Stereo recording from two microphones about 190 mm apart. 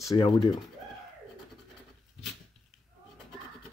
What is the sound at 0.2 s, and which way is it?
Speech, 25° left (ahead or behind).